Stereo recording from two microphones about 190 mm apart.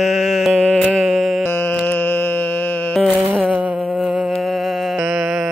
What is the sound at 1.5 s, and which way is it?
Music, 10° left (ahead or behind).